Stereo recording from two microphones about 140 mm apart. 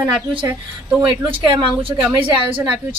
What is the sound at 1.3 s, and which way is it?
A woman's voice, 35° right (ahead or behind).